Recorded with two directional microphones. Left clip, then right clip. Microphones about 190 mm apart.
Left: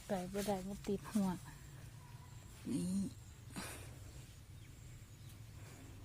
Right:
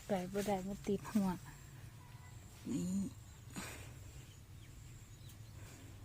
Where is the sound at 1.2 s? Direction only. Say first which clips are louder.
Right 1 dB; centre (ahead or behind).